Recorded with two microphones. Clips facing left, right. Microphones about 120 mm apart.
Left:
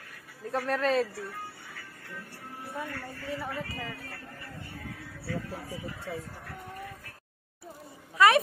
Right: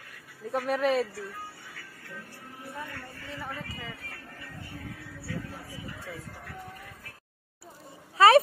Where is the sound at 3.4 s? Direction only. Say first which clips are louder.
Left 3 dB; centre (ahead or behind).